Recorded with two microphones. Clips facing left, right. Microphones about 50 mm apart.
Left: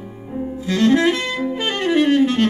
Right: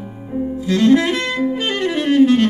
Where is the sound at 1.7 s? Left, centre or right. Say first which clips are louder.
Left 2 dB; left.